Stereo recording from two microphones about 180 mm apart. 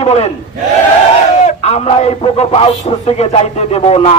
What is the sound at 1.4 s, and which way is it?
A man's voice, 35° left (ahead or behind).